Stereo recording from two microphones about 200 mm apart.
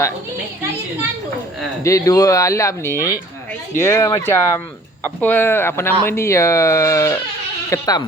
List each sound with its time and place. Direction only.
1.8 s speech: 15° left (ahead or behind)